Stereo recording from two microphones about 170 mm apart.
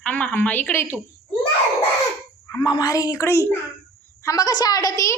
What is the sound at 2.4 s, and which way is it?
A child's voice, 25° left (ahead or behind).